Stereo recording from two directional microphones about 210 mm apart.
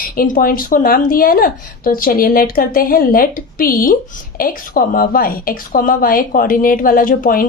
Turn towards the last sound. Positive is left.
turn(degrees=40)  # may be behind; listen again after turning